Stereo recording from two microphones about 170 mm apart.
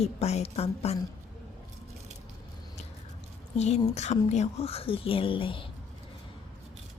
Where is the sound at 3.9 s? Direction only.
40° left (ahead or behind).